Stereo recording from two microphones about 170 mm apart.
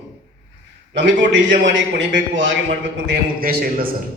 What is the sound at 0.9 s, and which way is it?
A man's voice, 90° right.